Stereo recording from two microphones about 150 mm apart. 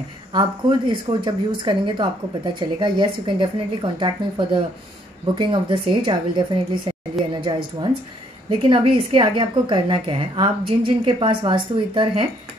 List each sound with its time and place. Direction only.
0.3 s speech: 30° right (ahead or behind)
7.2 s a sound: centre (ahead or behind)
8.6 s speech: 35° right (ahead or behind)